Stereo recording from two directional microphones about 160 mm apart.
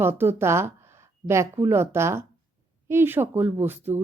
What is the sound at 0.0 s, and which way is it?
A woman's voice, 15° right (ahead or behind).